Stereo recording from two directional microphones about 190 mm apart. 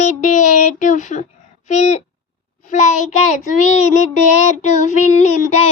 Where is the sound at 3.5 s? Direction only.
40° left (ahead or behind).